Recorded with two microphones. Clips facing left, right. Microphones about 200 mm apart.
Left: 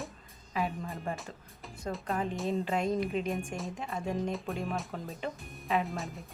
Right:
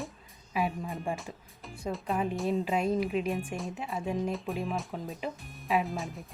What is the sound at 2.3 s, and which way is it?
A woman's voice, 5° right (ahead or behind).